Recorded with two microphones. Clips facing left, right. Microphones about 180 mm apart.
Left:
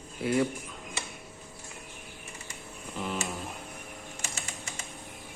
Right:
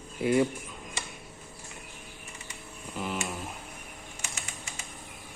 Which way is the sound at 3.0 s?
5° right (ahead or behind).